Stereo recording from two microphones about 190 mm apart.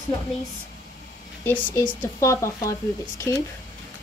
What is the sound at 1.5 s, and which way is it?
A woman's voice, 10° left (ahead or behind).